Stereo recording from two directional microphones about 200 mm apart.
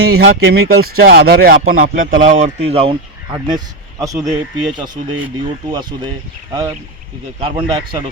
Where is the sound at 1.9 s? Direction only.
40° right (ahead or behind).